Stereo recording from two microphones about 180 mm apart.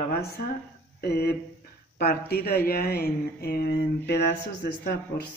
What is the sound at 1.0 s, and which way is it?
Speech, 60° left (ahead or behind).